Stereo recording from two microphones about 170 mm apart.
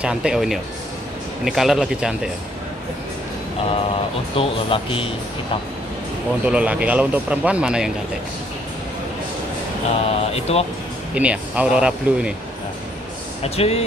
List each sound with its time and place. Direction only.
0.0 s speech: 5° right (ahead or behind)
4.4 s speech: 30° left (ahead or behind)
6.4 s speech: 5° right (ahead or behind)
10.0 s speech: 35° left (ahead or behind)
11.1 s speech: 10° right (ahead or behind)
13.4 s speech: 35° left (ahead or behind)